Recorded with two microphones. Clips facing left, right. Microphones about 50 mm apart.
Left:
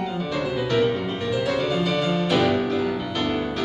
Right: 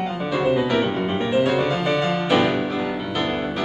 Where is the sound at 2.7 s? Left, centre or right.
Centre.